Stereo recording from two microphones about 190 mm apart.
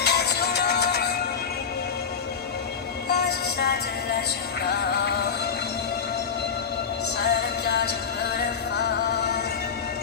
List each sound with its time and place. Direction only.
0.0 s music: 60° left (ahead or behind)
3.1 s train: 60° left (ahead or behind)
4.6 s music: 60° left (ahead or behind)
7.3 s music: 60° left (ahead or behind)